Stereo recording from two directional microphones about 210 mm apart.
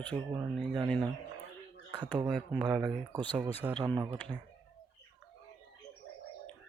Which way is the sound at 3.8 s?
20° right (ahead or behind).